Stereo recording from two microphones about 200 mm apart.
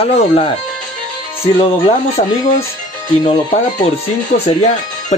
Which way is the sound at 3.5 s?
35° left (ahead or behind).